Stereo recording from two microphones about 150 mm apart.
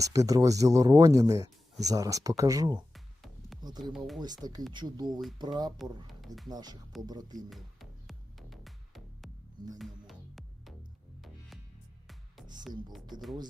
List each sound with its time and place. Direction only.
0.0 s speech: 25° right (ahead or behind)
2.7 s music: centre (ahead or behind)
3.6 s speech: 25° right (ahead or behind)
3.9 s speech: centre (ahead or behind)
4.2 s speech: 25° right (ahead or behind)
6.1 s speech: centre (ahead or behind)
6.5 s speech: 25° right (ahead or behind)
7.5 s music: centre (ahead or behind)